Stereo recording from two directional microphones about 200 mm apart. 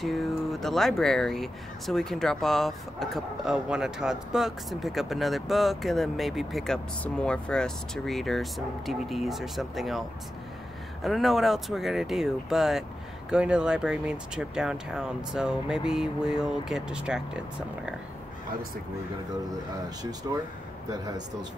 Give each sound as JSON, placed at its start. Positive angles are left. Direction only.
{"t": 0.0, "sound": "speech", "side_deg": 0}
{"t": 20.2, "sound": "speech", "side_deg": -20}